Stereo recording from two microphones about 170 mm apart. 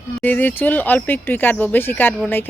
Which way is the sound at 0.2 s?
10° left (ahead or behind).